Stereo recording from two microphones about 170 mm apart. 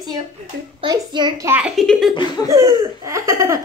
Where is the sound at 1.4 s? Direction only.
10° right (ahead or behind).